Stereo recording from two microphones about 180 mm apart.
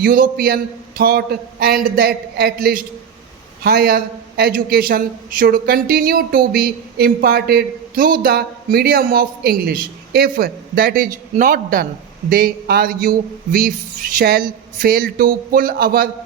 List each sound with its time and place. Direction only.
0.0 s a man's voice: 50° right (ahead or behind)